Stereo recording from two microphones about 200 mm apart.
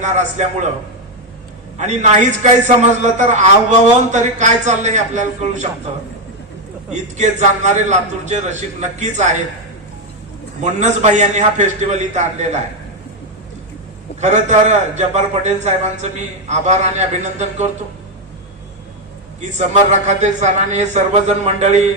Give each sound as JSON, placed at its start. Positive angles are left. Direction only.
{"t": 0.0, "sound": "a man's voice", "side_deg": -35}
{"t": 1.8, "sound": "a man's voice", "side_deg": -35}
{"t": 6.9, "sound": "a man's voice", "side_deg": -35}
{"t": 10.6, "sound": "a man's voice", "side_deg": -35}
{"t": 14.2, "sound": "a man's voice", "side_deg": -35}
{"t": 19.4, "sound": "a man's voice", "side_deg": -35}